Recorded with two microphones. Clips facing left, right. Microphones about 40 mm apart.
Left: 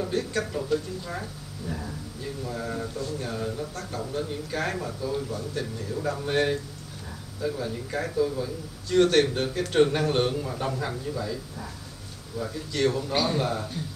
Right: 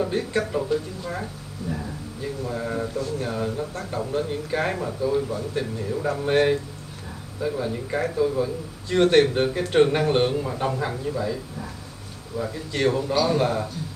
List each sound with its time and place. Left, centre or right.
0.0 s a man's voice: right
12.4 s a man's voice: right